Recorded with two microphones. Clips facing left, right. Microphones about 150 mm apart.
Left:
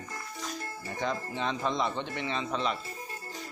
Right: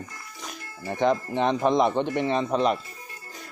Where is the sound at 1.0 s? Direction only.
60° right (ahead or behind).